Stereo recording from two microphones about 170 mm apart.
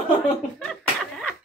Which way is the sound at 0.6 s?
5° left (ahead or behind).